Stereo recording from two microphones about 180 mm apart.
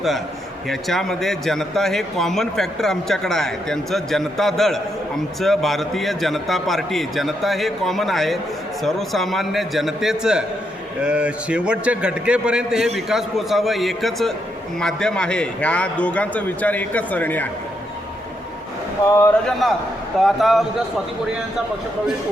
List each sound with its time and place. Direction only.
0.7 s a man's voice: centre (ahead or behind)
19.0 s a man's voice: 15° left (ahead or behind)
19.5 s a man's voice: centre (ahead or behind)